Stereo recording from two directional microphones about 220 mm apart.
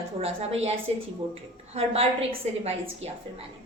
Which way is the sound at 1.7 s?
25° right (ahead or behind).